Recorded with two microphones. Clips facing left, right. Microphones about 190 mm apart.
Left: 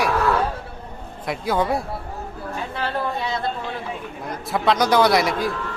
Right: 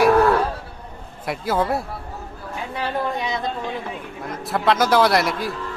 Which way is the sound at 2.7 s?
15° right (ahead or behind).